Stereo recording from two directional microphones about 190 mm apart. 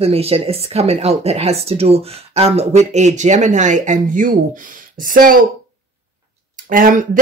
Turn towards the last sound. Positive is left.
turn(degrees=-45)  # may be behind; listen again after turning